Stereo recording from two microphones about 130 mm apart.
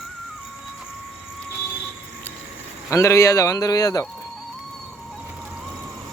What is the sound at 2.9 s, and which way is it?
A man's voice, 25° left (ahead or behind).